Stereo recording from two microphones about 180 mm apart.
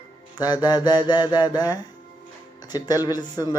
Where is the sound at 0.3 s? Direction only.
20° left (ahead or behind).